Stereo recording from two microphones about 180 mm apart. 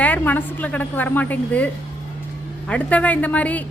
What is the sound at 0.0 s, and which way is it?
A woman's voice, 10° left (ahead or behind).